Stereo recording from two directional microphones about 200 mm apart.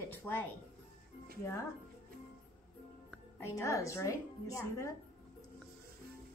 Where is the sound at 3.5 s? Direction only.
15° left (ahead or behind).